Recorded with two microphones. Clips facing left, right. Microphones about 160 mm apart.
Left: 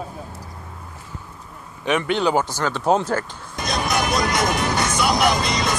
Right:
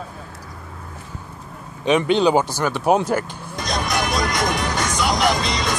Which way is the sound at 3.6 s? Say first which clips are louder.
Left 1 dB; 5° left (ahead or behind).